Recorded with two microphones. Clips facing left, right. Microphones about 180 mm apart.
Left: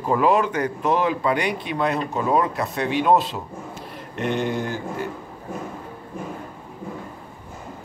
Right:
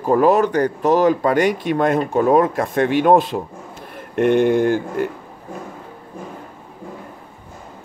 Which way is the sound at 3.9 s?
55° right (ahead or behind).